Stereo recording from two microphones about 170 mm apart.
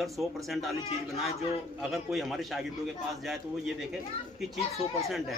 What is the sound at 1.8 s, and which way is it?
Speech, centre (ahead or behind).